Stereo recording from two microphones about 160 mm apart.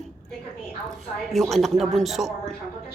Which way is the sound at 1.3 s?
Centre (ahead or behind).